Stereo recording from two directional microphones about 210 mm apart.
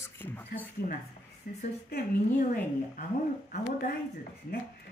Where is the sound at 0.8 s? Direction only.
35° left (ahead or behind).